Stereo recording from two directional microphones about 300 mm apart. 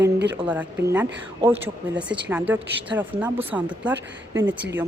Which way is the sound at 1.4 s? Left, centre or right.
Centre.